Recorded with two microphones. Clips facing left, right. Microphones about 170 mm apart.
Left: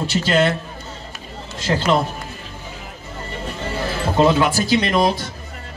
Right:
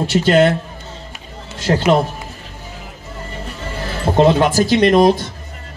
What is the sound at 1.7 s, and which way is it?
Speech, 45° right (ahead or behind).